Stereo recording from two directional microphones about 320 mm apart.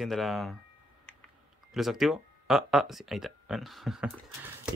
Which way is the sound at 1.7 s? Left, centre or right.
Centre.